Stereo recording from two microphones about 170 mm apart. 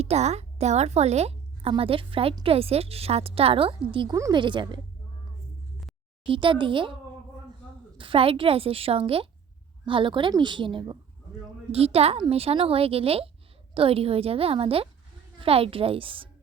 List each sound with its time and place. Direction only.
0.0 s a woman's voice: 40° right (ahead or behind)
6.2 s a woman's voice: 30° right (ahead or behind)
7.9 s a woman's voice: 30° right (ahead or behind)